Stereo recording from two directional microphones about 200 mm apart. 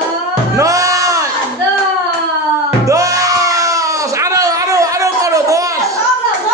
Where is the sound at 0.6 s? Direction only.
15° right (ahead or behind).